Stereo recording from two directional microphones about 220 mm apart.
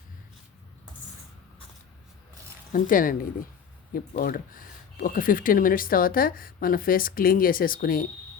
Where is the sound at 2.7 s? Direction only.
40° left (ahead or behind).